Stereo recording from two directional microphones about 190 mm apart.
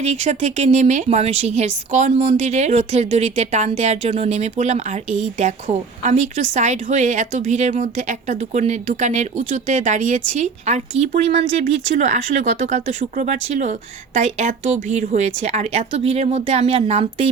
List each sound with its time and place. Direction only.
0.0 s a woman's voice: 35° right (ahead or behind)